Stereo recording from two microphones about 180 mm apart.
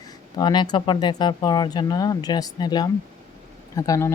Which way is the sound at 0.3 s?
25° left (ahead or behind).